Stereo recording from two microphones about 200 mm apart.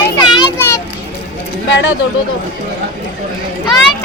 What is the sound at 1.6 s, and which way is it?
Speech, 70° left (ahead or behind).